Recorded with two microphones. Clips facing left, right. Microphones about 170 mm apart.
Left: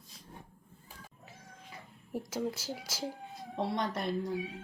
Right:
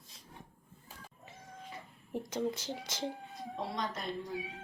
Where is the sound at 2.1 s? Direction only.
5° left (ahead or behind).